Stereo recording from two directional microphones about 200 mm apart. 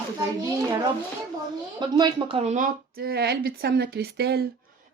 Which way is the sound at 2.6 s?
50° right (ahead or behind).